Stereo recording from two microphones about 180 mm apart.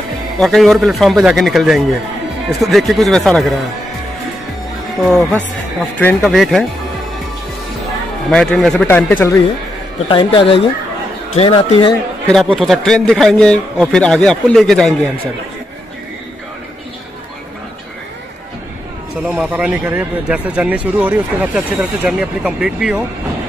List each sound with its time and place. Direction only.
0.4 s a man's voice: centre (ahead or behind)
5.1 s a man's voice: 5° left (ahead or behind)
8.3 s a man's voice: 5° left (ahead or behind)
9.9 s a woman's voice: 30° left (ahead or behind)
12.5 s a man's voice: centre (ahead or behind)
19.2 s a man's voice: 5° right (ahead or behind)